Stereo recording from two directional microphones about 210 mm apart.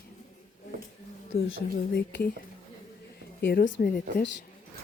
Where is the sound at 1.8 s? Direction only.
50° left (ahead or behind).